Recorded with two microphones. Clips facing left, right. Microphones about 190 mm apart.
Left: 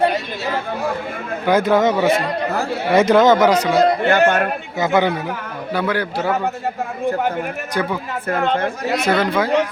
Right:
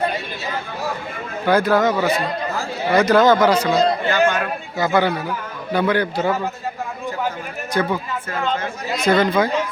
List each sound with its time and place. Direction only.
1.5 s speech: 20° left (ahead or behind)
2.2 s chatter: 65° left (ahead or behind)
2.9 s speech: 25° left (ahead or behind)
3.8 s speech: 70° left (ahead or behind)
4.8 s speech: 20° left (ahead or behind)
5.7 s a man's voice: 5° left (ahead or behind)
8.3 s speech: 60° left (ahead or behind)
9.0 s a man's voice: 5° left (ahead or behind)